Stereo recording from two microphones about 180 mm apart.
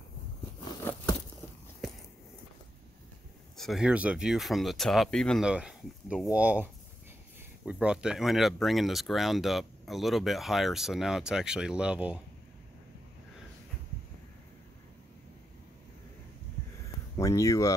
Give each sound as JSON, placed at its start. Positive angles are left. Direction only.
{"t": 3.5, "sound": "speech", "side_deg": 0}
{"t": 17.2, "sound": "speech", "side_deg": 20}